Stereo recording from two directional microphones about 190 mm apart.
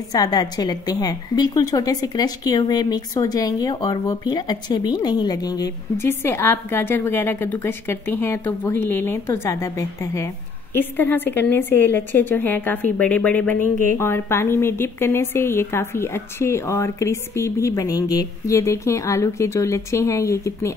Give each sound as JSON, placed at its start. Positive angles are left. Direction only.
{"t": 0.1, "sound": "a woman's voice", "side_deg": 20}